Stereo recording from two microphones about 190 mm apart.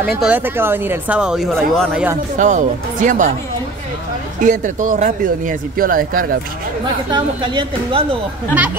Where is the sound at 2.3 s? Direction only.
40° right (ahead or behind).